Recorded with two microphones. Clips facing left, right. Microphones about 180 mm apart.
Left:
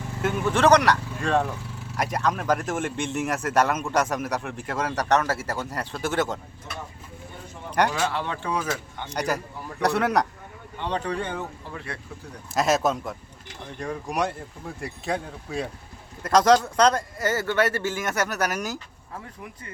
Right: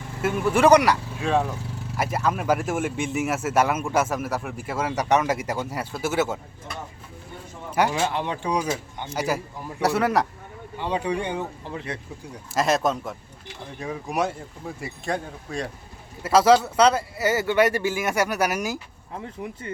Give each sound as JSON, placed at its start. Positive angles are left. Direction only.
{"t": 0.2, "sound": "speech", "side_deg": -5}
{"t": 7.7, "sound": "speech", "side_deg": -5}
{"t": 7.9, "sound": "speech", "side_deg": -20}
{"t": 9.0, "sound": "speech", "side_deg": -5}
{"t": 12.5, "sound": "speech", "side_deg": 0}
{"t": 19.1, "sound": "speech", "side_deg": -25}